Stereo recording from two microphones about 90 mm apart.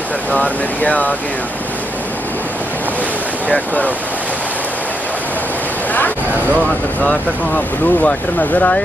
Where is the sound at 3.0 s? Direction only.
15° left (ahead or behind).